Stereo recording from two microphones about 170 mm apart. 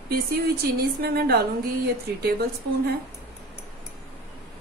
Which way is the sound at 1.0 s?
65° right (ahead or behind).